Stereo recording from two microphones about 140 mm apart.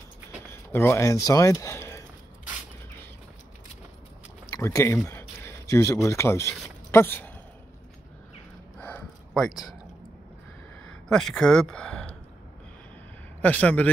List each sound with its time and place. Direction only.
0.5 s speech: 15° left (ahead or behind)
4.6 s speech: 20° left (ahead or behind)
8.7 s a sound: 10° left (ahead or behind)
11.1 s speech: 5° left (ahead or behind)
13.4 s speech: 10° left (ahead or behind)